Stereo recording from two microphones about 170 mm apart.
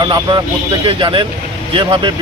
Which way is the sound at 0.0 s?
25° right (ahead or behind).